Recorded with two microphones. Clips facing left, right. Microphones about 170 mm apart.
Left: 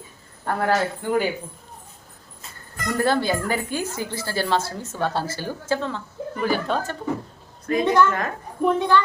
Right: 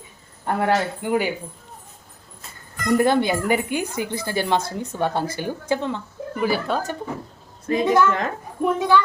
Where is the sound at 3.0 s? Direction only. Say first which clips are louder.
Right 1 dB; 20° right (ahead or behind).